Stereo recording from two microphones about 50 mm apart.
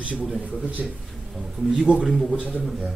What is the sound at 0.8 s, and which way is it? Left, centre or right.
Speech, right.